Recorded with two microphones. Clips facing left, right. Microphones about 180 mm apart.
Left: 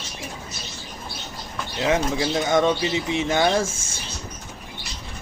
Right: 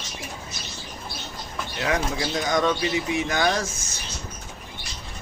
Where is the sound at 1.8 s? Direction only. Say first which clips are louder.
Left 4 dB; 25° left (ahead or behind).